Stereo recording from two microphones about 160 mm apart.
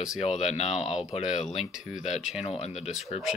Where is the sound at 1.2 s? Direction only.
5° right (ahead or behind).